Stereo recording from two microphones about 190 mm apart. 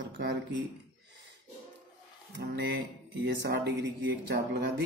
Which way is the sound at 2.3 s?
60° right (ahead or behind).